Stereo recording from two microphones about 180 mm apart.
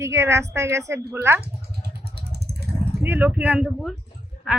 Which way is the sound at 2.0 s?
65° right (ahead or behind).